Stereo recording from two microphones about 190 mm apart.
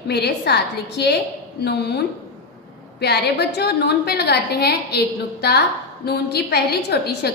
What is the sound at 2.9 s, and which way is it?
A woman's voice, 60° left (ahead or behind).